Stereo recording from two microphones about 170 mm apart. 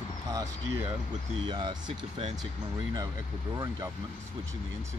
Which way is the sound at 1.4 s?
25° right (ahead or behind).